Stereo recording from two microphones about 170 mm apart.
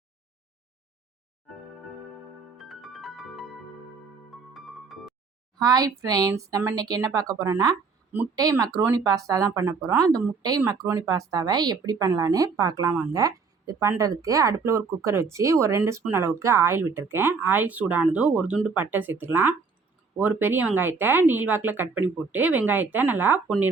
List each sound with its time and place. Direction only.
2.6 s music: centre (ahead or behind)
5.5 s speech: 20° right (ahead or behind)